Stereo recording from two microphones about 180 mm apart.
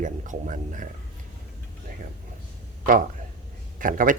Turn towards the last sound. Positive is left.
turn(degrees=-50)  # may be behind; listen again after turning